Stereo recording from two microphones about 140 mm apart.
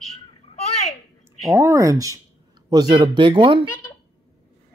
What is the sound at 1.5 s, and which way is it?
Speech, 25° right (ahead or behind).